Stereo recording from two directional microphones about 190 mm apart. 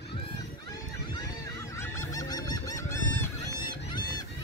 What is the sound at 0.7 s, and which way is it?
Goose, 20° left (ahead or behind).